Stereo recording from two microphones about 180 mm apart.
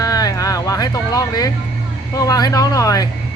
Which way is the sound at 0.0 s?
20° left (ahead or behind).